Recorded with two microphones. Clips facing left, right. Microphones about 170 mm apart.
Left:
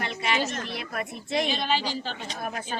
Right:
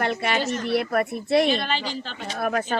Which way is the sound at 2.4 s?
70° right (ahead or behind).